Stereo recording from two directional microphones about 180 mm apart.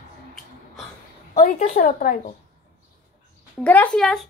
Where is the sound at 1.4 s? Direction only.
50° left (ahead or behind).